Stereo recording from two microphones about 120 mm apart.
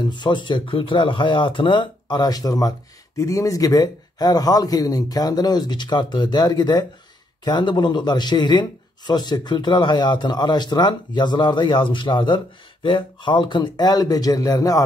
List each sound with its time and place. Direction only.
0.0 s a man's voice: 40° left (ahead or behind)